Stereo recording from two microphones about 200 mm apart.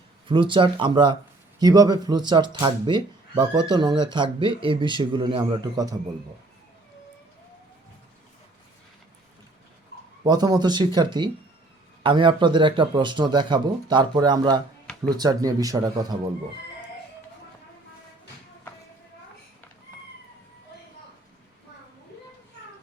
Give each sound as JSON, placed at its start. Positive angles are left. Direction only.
{"t": 0.3, "sound": "speech", "side_deg": -25}
{"t": 9.9, "sound": "a sound", "side_deg": 55}
{"t": 10.2, "sound": "speech", "side_deg": -20}